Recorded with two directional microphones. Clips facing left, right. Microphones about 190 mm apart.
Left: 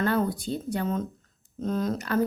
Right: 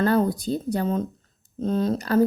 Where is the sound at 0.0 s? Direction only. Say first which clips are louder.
Right 5 dB; 35° right (ahead or behind).